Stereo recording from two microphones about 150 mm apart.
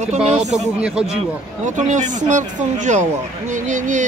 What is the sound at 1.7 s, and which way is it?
Speech, 55° right (ahead or behind).